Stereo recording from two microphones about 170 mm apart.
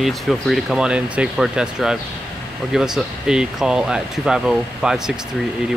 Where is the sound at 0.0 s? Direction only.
Centre (ahead or behind).